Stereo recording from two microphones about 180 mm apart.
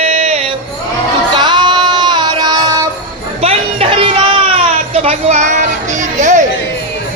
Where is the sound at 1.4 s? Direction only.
25° right (ahead or behind).